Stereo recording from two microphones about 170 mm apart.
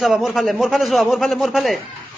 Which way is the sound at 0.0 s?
Centre (ahead or behind).